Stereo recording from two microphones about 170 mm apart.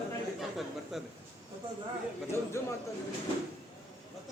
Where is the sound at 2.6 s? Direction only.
15° left (ahead or behind).